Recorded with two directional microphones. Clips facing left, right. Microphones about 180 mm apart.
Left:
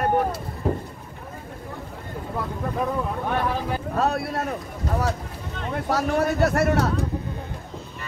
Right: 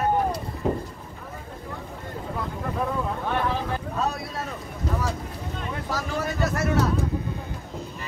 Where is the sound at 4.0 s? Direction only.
60° left (ahead or behind).